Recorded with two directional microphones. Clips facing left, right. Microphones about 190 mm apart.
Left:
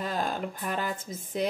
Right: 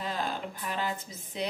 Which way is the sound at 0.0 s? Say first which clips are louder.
Left 3 dB; 45° left (ahead or behind).